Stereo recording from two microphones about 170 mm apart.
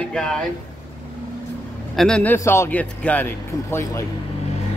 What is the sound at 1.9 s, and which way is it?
Speech, 5° left (ahead or behind).